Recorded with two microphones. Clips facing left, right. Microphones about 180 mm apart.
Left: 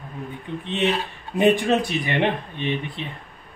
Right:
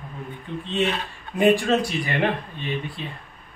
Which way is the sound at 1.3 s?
20° left (ahead or behind).